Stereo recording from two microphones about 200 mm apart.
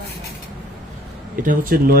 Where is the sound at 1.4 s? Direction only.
45° right (ahead or behind).